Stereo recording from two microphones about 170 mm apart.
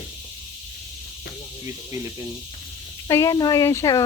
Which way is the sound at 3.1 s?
20° left (ahead or behind).